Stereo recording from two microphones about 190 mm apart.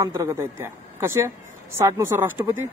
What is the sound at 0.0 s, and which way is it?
A woman's voice, 15° right (ahead or behind).